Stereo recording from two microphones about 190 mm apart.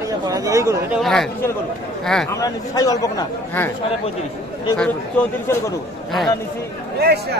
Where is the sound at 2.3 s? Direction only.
20° left (ahead or behind).